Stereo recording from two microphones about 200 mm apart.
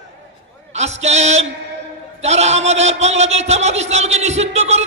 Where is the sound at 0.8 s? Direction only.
35° right (ahead or behind).